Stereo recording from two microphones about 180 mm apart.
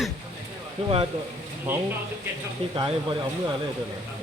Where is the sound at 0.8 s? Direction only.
30° right (ahead or behind).